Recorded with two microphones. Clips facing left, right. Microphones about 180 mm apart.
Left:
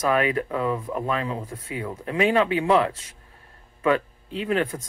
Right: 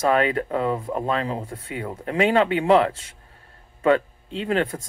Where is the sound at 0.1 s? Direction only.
25° right (ahead or behind).